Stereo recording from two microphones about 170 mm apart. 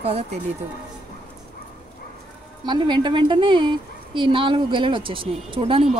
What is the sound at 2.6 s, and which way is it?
A woman's voice, 25° right (ahead or behind).